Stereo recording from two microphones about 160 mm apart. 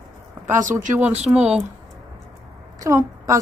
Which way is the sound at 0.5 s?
50° right (ahead or behind).